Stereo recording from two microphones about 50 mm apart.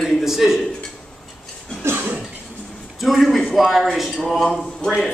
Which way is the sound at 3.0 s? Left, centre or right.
Centre.